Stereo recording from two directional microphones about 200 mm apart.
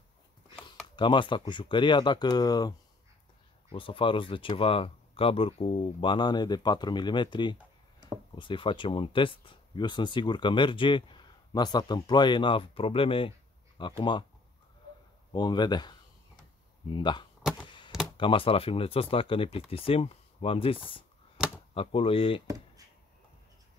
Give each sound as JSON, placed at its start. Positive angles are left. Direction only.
{"t": 0.9, "sound": "speech", "side_deg": 25}
{"t": 3.7, "sound": "speech", "side_deg": 25}
{"t": 15.3, "sound": "speech", "side_deg": 20}
{"t": 17.4, "sound": "a sound", "side_deg": -5}
{"t": 18.1, "sound": "speech", "side_deg": 25}